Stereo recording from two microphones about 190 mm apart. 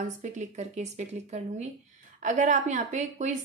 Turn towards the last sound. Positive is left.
turn(degrees=-40)  # may be behind; listen again after turning